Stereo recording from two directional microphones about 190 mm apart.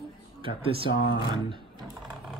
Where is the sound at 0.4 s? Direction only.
30° right (ahead or behind).